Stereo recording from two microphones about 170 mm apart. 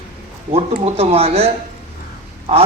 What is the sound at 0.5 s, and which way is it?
Speech, 35° right (ahead or behind).